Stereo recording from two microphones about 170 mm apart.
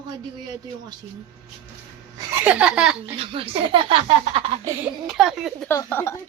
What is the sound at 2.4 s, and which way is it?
Speech, 10° right (ahead or behind).